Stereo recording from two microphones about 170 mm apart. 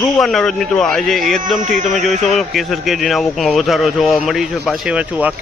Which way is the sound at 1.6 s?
50° right (ahead or behind).